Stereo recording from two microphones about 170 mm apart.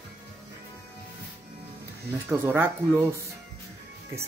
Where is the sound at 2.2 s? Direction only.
10° right (ahead or behind).